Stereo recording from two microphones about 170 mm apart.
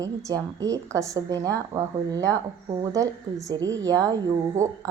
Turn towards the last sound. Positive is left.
turn(degrees=-20)  # may be behind; listen again after turning